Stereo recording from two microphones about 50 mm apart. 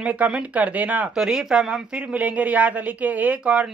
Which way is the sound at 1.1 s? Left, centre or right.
Centre.